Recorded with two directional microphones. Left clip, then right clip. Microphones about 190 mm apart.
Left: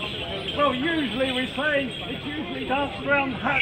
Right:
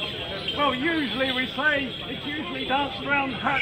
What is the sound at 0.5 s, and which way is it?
Speech, 20° left (ahead or behind).